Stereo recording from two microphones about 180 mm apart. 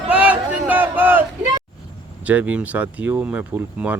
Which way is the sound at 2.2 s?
10° right (ahead or behind).